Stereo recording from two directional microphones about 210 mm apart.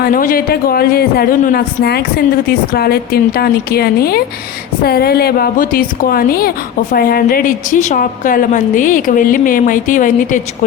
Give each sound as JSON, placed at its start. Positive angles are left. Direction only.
{"t": 0.0, "sound": "a woman's voice", "side_deg": 40}